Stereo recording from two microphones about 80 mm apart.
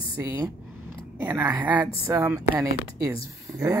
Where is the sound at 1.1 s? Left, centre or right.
Right.